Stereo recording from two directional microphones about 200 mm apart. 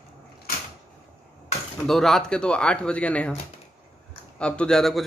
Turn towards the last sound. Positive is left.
turn(degrees=0)  # may be behind; listen again after turning